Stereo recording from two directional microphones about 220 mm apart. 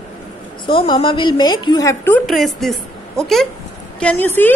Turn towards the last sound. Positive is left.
turn(degrees=10)  # may be behind; listen again after turning